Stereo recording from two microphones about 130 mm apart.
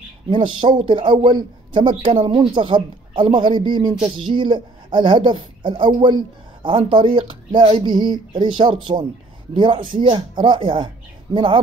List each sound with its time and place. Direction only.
0.3 s speech: 40° right (ahead or behind)